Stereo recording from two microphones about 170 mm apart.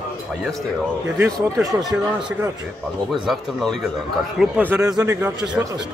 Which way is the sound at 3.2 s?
5° left (ahead or behind).